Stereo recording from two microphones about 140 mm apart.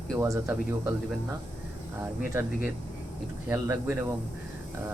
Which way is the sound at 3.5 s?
20° right (ahead or behind).